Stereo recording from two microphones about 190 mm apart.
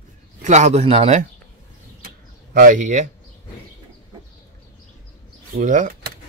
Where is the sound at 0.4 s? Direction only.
35° right (ahead or behind).